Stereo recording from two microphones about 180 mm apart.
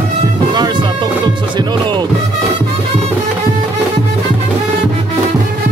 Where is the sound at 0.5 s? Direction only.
25° right (ahead or behind).